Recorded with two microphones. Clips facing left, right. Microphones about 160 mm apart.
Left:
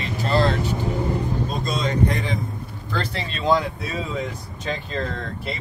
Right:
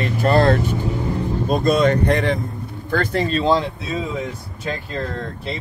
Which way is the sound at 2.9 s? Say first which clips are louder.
Right 9 dB; 50° right (ahead or behind).